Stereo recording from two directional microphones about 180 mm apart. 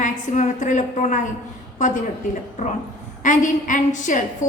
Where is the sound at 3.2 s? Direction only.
45° left (ahead or behind).